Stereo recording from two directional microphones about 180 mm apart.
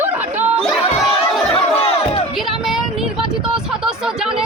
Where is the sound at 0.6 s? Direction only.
Centre (ahead or behind).